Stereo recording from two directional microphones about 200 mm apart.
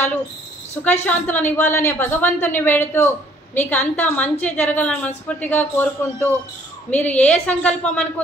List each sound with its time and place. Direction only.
0.8 s a woman's voice: 10° left (ahead or behind)